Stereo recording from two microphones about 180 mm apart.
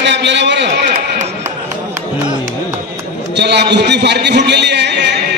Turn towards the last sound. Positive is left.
turn(degrees=-70)  # may be behind; listen again after turning